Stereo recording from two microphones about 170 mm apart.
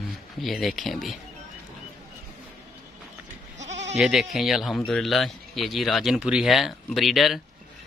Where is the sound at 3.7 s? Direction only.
90° right.